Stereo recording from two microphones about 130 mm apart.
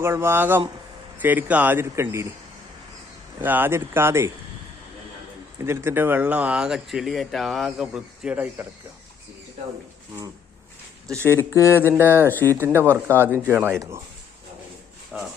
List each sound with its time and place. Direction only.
0.0 s speech: 20° right (ahead or behind)
3.4 s speech: 15° right (ahead or behind)
5.5 s speech: 20° right (ahead or behind)
11.2 s speech: 20° left (ahead or behind)
11.9 s speech: 15° right (ahead or behind)
12.3 s speech: 15° left (ahead or behind)
12.5 s speech: 20° right (ahead or behind)
15.1 s speech: 5° right (ahead or behind)